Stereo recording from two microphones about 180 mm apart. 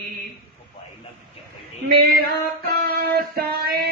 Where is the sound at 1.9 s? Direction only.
55° right (ahead or behind).